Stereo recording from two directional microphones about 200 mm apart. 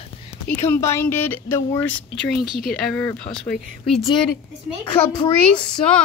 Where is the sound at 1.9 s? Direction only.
65° left (ahead or behind).